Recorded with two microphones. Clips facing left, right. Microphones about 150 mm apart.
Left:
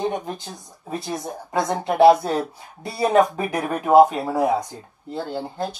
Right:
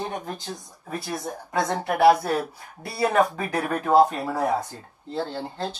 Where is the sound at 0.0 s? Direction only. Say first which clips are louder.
Left 5 dB; 20° left (ahead or behind).